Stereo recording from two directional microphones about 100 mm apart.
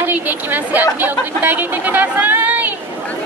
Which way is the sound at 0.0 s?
20° right (ahead or behind).